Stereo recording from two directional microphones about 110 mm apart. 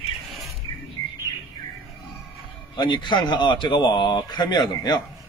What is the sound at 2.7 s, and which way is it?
Speech, 45° left (ahead or behind).